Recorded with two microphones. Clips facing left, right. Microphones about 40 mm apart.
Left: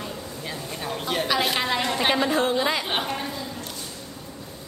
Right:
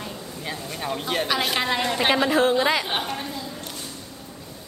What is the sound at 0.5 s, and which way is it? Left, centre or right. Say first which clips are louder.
A man's voice: right 3 dB; centre.